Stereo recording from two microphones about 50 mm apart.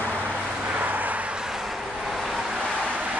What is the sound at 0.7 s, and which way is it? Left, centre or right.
Vehicle, right.